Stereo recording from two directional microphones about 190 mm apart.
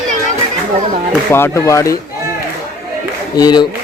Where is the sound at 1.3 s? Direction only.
15° left (ahead or behind).